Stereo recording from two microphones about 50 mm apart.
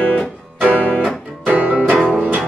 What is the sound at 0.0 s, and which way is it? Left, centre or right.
Music, centre.